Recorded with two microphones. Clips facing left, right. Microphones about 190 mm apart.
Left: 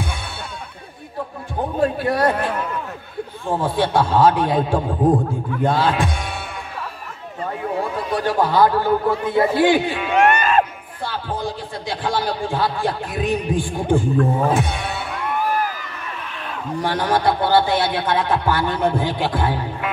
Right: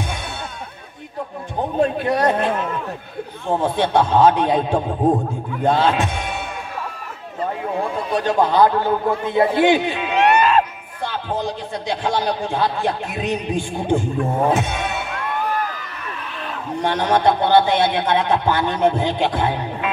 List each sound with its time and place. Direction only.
1.8 s a man's voice: 20° right (ahead or behind)
5.7 s music: 20° right (ahead or behind)
8.1 s a man's voice: 20° right (ahead or behind)
10.2 s music: 50° left (ahead or behind)
11.1 s a man's voice: 20° right (ahead or behind)
16.8 s a man's voice: 20° right (ahead or behind)